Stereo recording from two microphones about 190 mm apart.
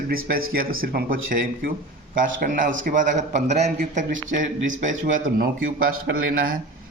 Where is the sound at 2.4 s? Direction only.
50° right (ahead or behind).